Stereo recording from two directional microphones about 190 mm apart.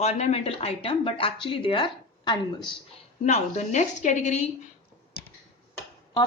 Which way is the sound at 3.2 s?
35° left (ahead or behind).